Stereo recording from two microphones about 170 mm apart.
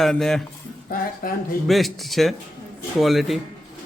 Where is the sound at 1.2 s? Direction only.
55° left (ahead or behind).